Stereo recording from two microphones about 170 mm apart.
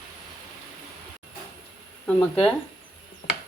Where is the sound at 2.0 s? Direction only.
5° left (ahead or behind).